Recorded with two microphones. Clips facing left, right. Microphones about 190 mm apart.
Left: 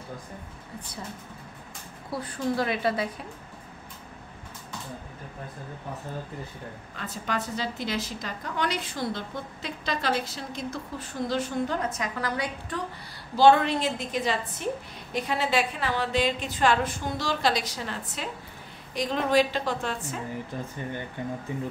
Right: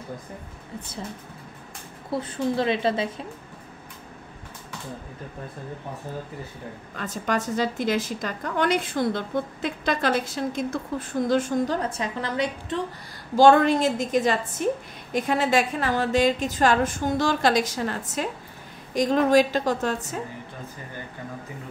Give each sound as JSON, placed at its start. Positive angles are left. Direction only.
{"t": 2.0, "sound": "a woman's voice", "side_deg": -25}
{"t": 7.2, "sound": "a woman's voice", "side_deg": -45}
{"t": 13.4, "sound": "a woman's voice", "side_deg": -45}